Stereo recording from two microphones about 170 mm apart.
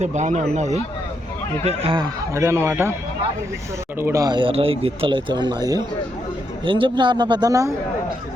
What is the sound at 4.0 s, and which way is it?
Speech, 15° right (ahead or behind).